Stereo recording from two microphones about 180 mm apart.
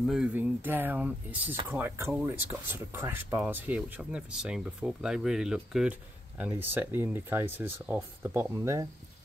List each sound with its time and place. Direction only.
0.0 s speech: 5° right (ahead or behind)